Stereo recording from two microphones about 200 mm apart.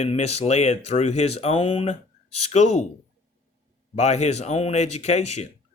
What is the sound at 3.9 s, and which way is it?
Speech, 35° left (ahead or behind).